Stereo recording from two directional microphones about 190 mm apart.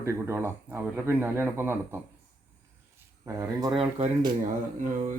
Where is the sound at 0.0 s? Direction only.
15° right (ahead or behind).